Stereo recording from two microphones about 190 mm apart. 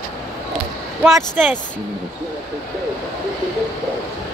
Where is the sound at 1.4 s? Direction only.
5° right (ahead or behind).